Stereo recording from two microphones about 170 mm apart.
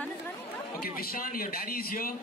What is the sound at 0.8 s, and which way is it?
A man's voice, 60° left (ahead or behind).